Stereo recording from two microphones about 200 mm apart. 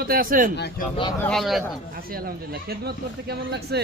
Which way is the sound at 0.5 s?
55° left (ahead or behind).